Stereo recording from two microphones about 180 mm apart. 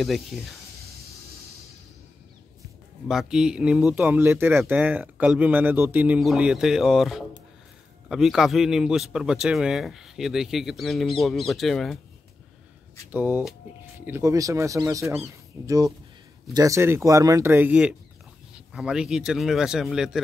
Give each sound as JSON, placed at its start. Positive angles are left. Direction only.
{"t": 3.1, "sound": "a man's voice", "side_deg": 0}
{"t": 13.1, "sound": "a man's voice", "side_deg": -10}